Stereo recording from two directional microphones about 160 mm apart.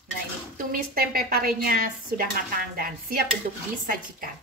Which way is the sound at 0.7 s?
65° right (ahead or behind).